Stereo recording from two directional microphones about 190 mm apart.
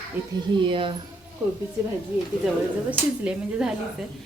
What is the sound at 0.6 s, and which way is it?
Speech, 25° right (ahead or behind).